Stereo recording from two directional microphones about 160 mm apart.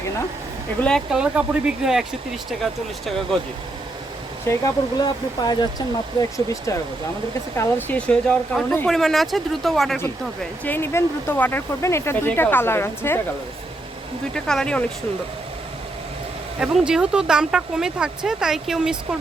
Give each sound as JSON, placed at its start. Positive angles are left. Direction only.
{"t": 0.8, "sound": "speech", "side_deg": 5}
{"t": 4.4, "sound": "speech", "side_deg": 20}
{"t": 6.1, "sound": "speech", "side_deg": 20}
{"t": 10.6, "sound": "speech", "side_deg": 15}
{"t": 14.3, "sound": "speech", "side_deg": 5}
{"t": 16.6, "sound": "speech", "side_deg": -5}